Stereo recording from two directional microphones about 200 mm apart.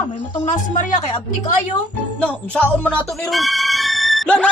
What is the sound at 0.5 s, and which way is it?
A woman's voice, 40° left (ahead or behind).